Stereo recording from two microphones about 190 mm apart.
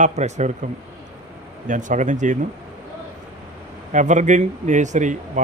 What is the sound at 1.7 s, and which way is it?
Speech, 40° right (ahead or behind).